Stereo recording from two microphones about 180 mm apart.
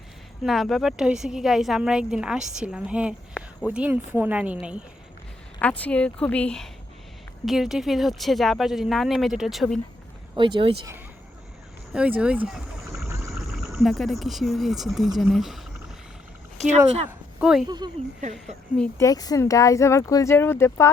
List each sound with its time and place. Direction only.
0.4 s speech: centre (ahead or behind)
5.5 s speech: 10° left (ahead or behind)
10.3 s speech: 30° right (ahead or behind)
11.9 s speech: 5° right (ahead or behind)
13.1 s vehicle: 15° right (ahead or behind)
13.5 s speech: centre (ahead or behind)
16.6 s speech: 40° right (ahead or behind)
17.1 s speech: 5° right (ahead or behind)
17.7 s speech: 25° right (ahead or behind)
18.2 s speech: 40° right (ahead or behind)
18.9 s speech: 20° left (ahead or behind)